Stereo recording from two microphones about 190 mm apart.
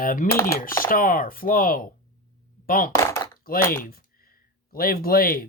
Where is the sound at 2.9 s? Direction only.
15° left (ahead or behind).